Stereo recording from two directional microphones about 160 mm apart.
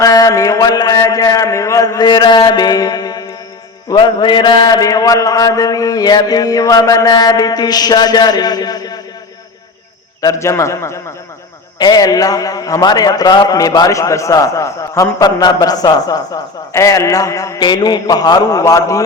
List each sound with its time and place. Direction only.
0.0 s a man's voice: 20° left (ahead or behind)
10.2 s a man's voice: 20° left (ahead or behind)